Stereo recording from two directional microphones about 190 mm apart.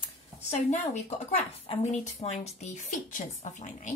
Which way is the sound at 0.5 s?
35° left (ahead or behind).